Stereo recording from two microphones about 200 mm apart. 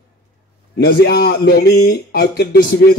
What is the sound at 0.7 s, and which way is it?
A man's voice, 50° left (ahead or behind).